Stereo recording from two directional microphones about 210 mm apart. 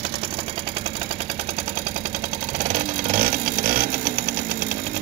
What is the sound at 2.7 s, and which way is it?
Sewing machine, 40° right (ahead or behind).